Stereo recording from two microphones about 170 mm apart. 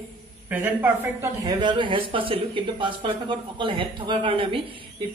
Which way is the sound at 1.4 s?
25° right (ahead or behind).